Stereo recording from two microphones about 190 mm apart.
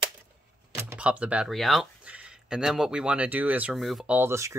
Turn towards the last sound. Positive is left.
turn(degrees=-15)  # may be behind; listen again after turning